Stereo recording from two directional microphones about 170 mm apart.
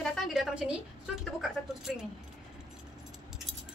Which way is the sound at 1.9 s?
Centre (ahead or behind).